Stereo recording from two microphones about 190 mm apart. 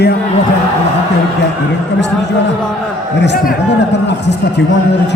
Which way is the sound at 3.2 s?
55° left (ahead or behind).